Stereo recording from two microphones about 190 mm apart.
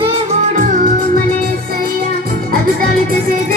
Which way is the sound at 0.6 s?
40° right (ahead or behind).